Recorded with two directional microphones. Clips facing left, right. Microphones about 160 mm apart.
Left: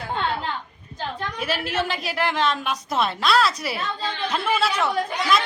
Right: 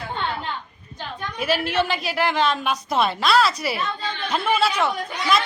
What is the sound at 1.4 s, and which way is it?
A woman's voice, centre (ahead or behind).